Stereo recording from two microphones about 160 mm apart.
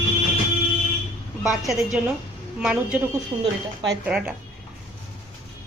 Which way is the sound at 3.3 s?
30° right (ahead or behind).